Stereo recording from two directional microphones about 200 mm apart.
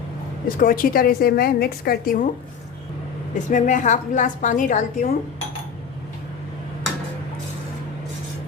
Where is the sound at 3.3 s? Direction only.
40° left (ahead or behind).